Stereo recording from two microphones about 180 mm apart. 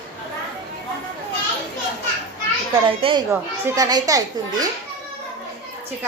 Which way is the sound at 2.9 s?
30° right (ahead or behind).